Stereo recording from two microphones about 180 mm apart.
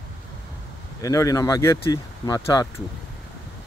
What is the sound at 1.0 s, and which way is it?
Speech, 20° left (ahead or behind).